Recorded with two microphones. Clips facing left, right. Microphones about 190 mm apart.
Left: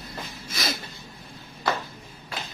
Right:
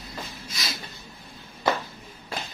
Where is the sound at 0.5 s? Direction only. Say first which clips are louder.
Left 7 dB; 55° left (ahead or behind).